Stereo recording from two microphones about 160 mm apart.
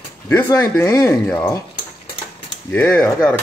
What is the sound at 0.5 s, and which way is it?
Speech, 25° left (ahead or behind).